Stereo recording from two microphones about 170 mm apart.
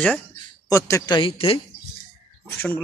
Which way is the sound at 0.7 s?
15° left (ahead or behind).